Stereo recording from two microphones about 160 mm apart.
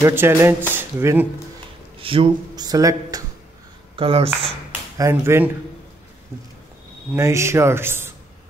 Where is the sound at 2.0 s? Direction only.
30° right (ahead or behind).